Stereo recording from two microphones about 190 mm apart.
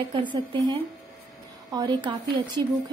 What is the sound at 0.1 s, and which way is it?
A woman's voice, 25° right (ahead or behind).